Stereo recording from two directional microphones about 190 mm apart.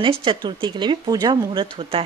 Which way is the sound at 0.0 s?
25° right (ahead or behind).